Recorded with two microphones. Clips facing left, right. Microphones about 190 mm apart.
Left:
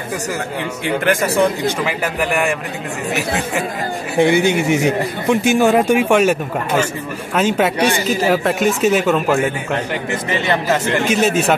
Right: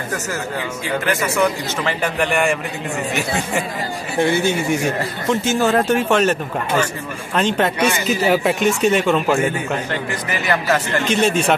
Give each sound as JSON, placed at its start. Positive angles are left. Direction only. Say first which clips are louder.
{"t": 1.2, "sound": "speech", "louder": "left 1 dB", "side_deg": 35}
{"t": 1.9, "sound": "speech", "louder": "even", "side_deg": 5}
{"t": 4.2, "sound": "speech", "louder": "left 4 dB", "side_deg": 15}
{"t": 7.3, "sound": "speech", "louder": "left 2 dB", "side_deg": 5}
{"t": 10.3, "sound": "speech", "louder": "left 1 dB", "side_deg": 25}
{"t": 11.1, "sound": "speech", "louder": "even", "side_deg": 5}